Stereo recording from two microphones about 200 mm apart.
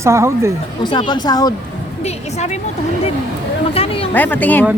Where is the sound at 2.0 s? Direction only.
35° left (ahead or behind).